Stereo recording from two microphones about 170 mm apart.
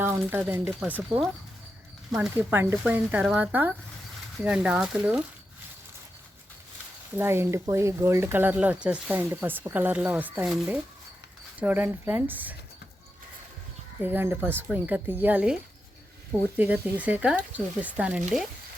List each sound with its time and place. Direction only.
0.0 s speech: 10° right (ahead or behind)
2.3 s speech: 10° right (ahead or behind)
7.2 s speech: 15° right (ahead or behind)
11.6 s speech: 10° right (ahead or behind)
14.0 s speech: 10° right (ahead or behind)